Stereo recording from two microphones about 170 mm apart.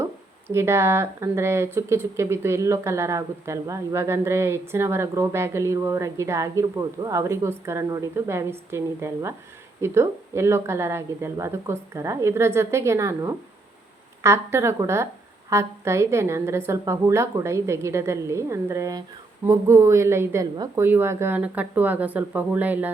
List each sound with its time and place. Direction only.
0.0 s speech: 15° right (ahead or behind)